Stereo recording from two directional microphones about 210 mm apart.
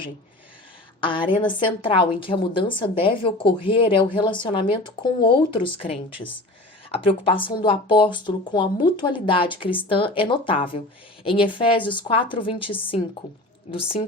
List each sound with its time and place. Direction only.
1.0 s speech: 25° left (ahead or behind)